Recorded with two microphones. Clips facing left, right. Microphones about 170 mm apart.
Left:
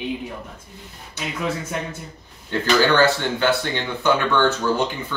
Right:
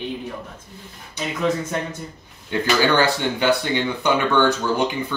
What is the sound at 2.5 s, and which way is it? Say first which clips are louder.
Speech: left 1 dB; 15° right (ahead or behind).